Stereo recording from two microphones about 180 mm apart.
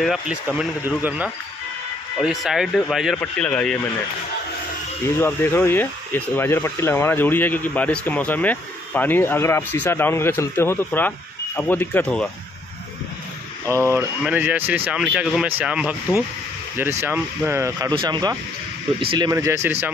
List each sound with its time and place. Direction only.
0.0 s speech: 5° right (ahead or behind)
5.0 s speech: 15° left (ahead or behind)
13.7 s speech: 15° right (ahead or behind)
17.0 s speech: 15° right (ahead or behind)